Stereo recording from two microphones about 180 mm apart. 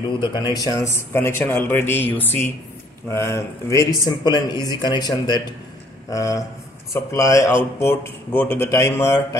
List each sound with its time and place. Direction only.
0.3 s a man's voice: 20° left (ahead or behind)